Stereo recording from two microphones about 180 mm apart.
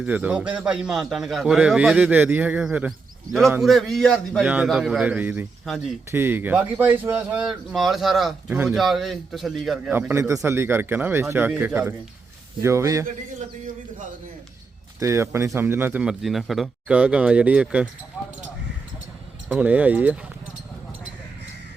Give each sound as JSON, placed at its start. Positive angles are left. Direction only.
{"t": 0.0, "sound": "speech", "side_deg": -5}
{"t": 6.1, "sound": "speech", "side_deg": -10}
{"t": 9.9, "sound": "speech", "side_deg": -15}
{"t": 14.9, "sound": "speech", "side_deg": -15}
{"t": 18.2, "sound": "a sound", "side_deg": 0}
{"t": 19.5, "sound": "speech", "side_deg": -5}